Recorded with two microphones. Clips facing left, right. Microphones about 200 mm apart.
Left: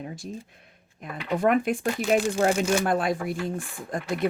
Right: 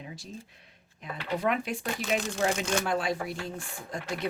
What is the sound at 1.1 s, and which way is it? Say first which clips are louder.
Speech: left 6 dB; 50° left (ahead or behind).